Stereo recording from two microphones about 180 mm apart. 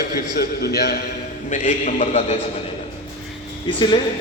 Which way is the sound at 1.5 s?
40° left (ahead or behind).